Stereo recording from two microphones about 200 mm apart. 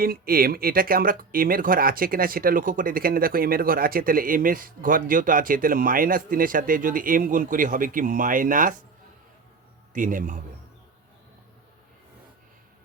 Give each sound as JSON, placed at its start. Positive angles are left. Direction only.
{"t": 0.0, "sound": "speech", "side_deg": -45}
{"t": 9.9, "sound": "a man's voice", "side_deg": -40}